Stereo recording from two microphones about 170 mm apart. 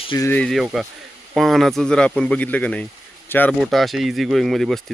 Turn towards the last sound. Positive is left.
turn(degrees=0)  # may be behind; listen again after turning